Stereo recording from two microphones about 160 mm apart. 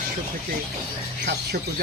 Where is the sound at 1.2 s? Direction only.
85° right.